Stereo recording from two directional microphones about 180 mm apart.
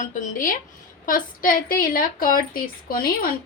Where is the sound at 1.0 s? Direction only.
50° left (ahead or behind).